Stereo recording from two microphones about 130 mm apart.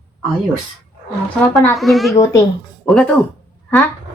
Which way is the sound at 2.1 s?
25° left (ahead or behind).